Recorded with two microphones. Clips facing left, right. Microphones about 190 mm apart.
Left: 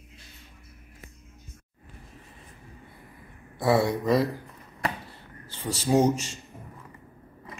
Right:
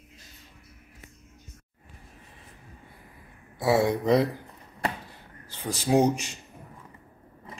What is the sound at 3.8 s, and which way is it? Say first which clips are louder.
Speech: right 1 dB; 20° right (ahead or behind).